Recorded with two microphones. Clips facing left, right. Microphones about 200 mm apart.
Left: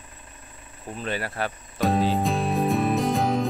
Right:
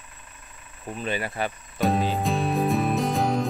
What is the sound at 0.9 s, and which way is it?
Music, 10° right (ahead or behind).